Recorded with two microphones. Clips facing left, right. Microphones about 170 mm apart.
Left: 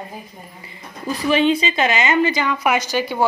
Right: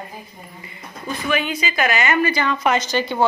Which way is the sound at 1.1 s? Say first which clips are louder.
Left 6 dB; 35° left (ahead or behind).